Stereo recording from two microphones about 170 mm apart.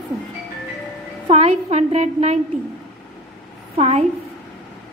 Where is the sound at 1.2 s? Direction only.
40° right (ahead or behind).